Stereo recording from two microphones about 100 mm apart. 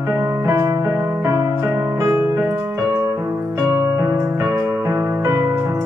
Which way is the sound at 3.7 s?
35° right (ahead or behind).